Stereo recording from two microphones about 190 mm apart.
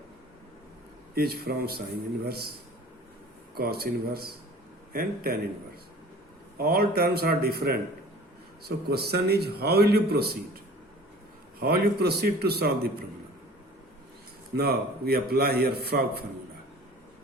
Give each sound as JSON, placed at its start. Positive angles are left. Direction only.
{"t": 1.1, "sound": "a man's voice", "side_deg": -55}
{"t": 3.5, "sound": "a man's voice", "side_deg": -55}
{"t": 6.6, "sound": "a man's voice", "side_deg": -55}
{"t": 11.6, "sound": "a man's voice", "side_deg": -55}
{"t": 14.5, "sound": "a man's voice", "side_deg": -55}